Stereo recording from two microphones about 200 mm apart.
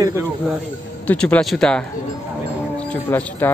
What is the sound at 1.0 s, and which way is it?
Speech, 5° left (ahead or behind).